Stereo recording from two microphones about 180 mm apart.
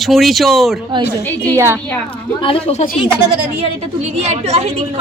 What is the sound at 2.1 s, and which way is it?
Speech, 30° left (ahead or behind).